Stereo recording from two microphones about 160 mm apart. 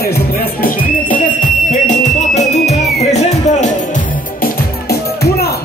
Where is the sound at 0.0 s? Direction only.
70° left (ahead or behind).